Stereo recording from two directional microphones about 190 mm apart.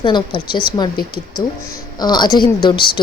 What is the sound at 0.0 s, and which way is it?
Speech, 25° left (ahead or behind).